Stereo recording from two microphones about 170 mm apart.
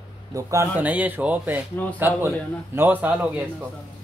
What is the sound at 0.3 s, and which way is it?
A man's voice, 20° right (ahead or behind).